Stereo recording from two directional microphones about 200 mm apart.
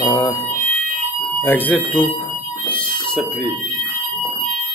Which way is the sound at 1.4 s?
10° left (ahead or behind).